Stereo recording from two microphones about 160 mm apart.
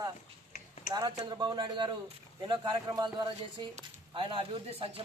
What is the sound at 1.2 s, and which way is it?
A man's voice, 25° right (ahead or behind).